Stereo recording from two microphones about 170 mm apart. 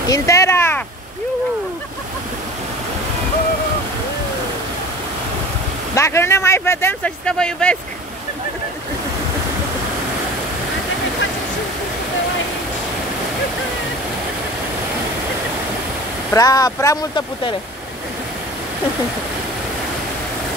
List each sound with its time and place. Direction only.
0.1 s speech: 20° left (ahead or behind)
5.9 s speech: 15° left (ahead or behind)
16.3 s speech: 20° left (ahead or behind)